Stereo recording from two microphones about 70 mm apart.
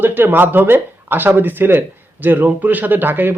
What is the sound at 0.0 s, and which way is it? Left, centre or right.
Speech, right.